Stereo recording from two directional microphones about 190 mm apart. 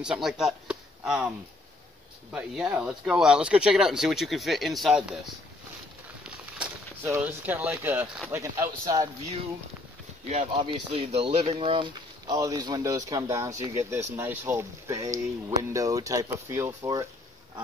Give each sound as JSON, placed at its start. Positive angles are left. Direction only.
{"t": 0.0, "sound": "speech", "side_deg": -5}
{"t": 2.3, "sound": "speech", "side_deg": -5}
{"t": 6.2, "sound": "a sound", "side_deg": -10}
{"t": 8.3, "sound": "speech", "side_deg": -15}
{"t": 10.2, "sound": "speech", "side_deg": -35}